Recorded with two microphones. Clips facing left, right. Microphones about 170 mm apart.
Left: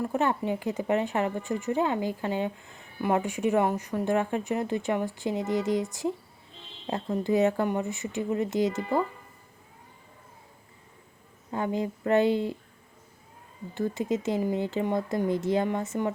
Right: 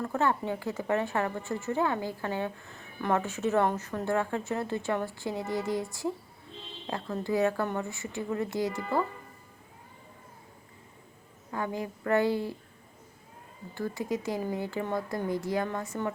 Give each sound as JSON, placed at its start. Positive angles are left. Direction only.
{"t": 0.0, "sound": "speech", "side_deg": 20}
{"t": 11.5, "sound": "speech", "side_deg": 20}
{"t": 13.7, "sound": "speech", "side_deg": 20}